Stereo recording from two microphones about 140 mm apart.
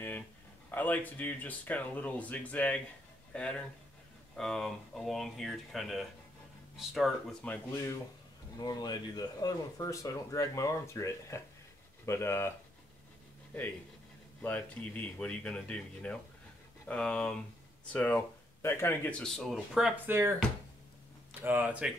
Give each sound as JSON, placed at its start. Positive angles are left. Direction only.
{"t": 0.7, "sound": "speech", "side_deg": 10}
{"t": 7.4, "sound": "speech", "side_deg": 15}
{"t": 8.5, "sound": "speech", "side_deg": 30}
{"t": 14.4, "sound": "speech", "side_deg": 10}
{"t": 20.1, "sound": "speech", "side_deg": -15}
{"t": 21.4, "sound": "speech", "side_deg": -15}